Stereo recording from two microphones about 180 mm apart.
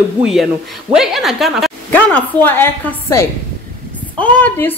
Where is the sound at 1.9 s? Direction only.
10° left (ahead or behind).